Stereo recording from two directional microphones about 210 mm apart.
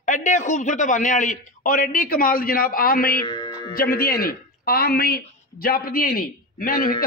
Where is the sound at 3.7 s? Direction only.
45° left (ahead or behind).